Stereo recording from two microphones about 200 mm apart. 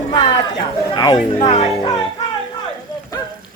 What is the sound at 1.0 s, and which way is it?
Speech, 20° left (ahead or behind).